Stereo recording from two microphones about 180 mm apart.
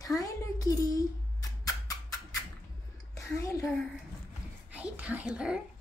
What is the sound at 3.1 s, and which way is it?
Speech, 15° left (ahead or behind).